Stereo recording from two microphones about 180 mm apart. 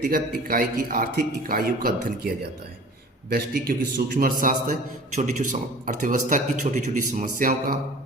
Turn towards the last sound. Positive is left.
turn(degrees=-50)  # may be behind; listen again after turning